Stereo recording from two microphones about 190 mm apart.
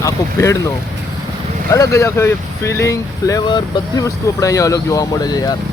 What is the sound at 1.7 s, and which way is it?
Speech, 15° left (ahead or behind).